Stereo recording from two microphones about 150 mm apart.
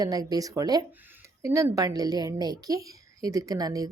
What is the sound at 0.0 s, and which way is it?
A woman's voice, 25° right (ahead or behind).